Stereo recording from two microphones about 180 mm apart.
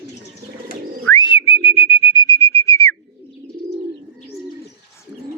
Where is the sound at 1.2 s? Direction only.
30° left (ahead or behind); by 2.9 s 15° left (ahead or behind).